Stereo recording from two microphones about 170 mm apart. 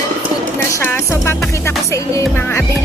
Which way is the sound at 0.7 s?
10° left (ahead or behind).